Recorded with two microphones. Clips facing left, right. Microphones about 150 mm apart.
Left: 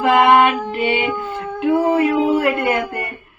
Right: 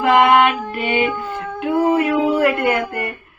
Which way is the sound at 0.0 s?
25° left (ahead or behind).